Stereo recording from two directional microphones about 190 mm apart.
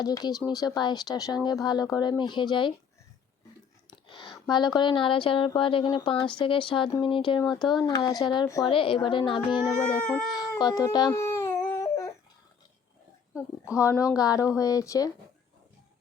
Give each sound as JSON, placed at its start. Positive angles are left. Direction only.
{"t": 0.0, "sound": "speech", "side_deg": 20}
{"t": 4.1, "sound": "speech", "side_deg": 25}
{"t": 10.3, "sound": "baby cry", "side_deg": 20}
{"t": 13.7, "sound": "speech", "side_deg": 15}